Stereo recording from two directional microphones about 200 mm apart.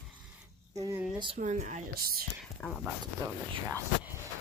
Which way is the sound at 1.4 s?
35° right (ahead or behind).